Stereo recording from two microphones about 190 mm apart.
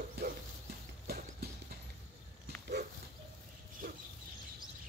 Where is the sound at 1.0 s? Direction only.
55° right (ahead or behind).